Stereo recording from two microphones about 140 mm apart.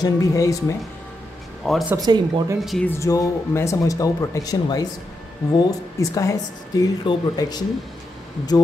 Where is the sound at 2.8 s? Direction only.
25° left (ahead or behind).